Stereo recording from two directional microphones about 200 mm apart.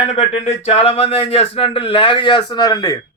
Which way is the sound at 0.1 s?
35° left (ahead or behind).